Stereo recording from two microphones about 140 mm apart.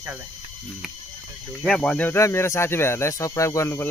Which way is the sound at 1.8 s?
10° left (ahead or behind).